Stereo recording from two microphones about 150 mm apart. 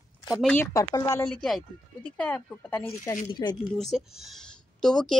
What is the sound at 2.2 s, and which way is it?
Speech, 10° left (ahead or behind).